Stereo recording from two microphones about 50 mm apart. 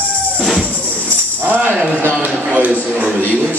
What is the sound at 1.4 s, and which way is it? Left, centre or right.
Speech, right.